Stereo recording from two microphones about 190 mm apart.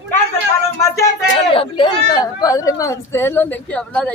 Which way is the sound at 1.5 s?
30° left (ahead or behind).